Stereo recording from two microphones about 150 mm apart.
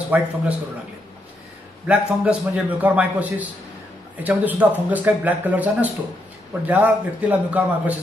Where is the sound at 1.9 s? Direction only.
5° right (ahead or behind).